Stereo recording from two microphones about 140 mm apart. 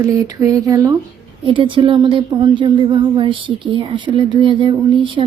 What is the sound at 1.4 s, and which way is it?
Speech, 35° right (ahead or behind).